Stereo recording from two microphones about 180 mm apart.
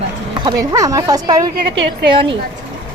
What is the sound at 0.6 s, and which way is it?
Speech, 20° right (ahead or behind).